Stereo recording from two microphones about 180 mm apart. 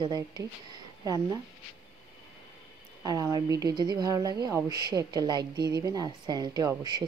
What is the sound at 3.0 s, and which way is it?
Speech, 20° right (ahead or behind).